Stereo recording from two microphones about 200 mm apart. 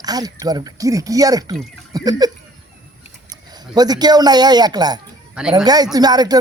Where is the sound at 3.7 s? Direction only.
20° right (ahead or behind).